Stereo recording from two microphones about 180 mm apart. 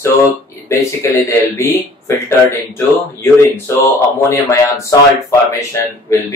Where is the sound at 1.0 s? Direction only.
15° left (ahead or behind).